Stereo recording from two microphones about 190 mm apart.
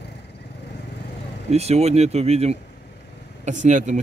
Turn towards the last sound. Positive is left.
turn(degrees=-40)  # may be behind; listen again after turning